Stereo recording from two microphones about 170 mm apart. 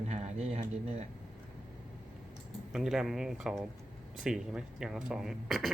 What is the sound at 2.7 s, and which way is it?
Speech, 5° right (ahead or behind).